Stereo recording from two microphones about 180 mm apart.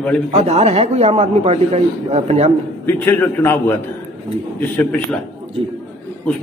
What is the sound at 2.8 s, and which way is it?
A man's voice, 10° left (ahead or behind).